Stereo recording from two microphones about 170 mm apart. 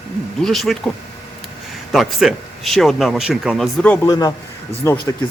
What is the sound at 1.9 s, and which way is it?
Speech, centre (ahead or behind).